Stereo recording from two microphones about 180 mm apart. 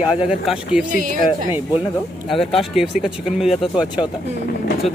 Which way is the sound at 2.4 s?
30° left (ahead or behind).